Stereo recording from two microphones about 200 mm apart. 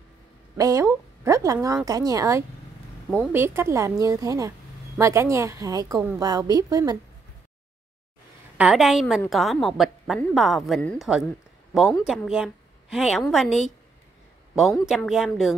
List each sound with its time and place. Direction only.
0.6 s a woman's voice: 15° right (ahead or behind)
8.5 s a woman's voice: 5° right (ahead or behind)
14.5 s a woman's voice: centre (ahead or behind)